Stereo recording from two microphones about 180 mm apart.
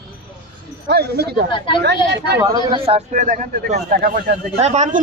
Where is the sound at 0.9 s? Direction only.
65° right (ahead or behind).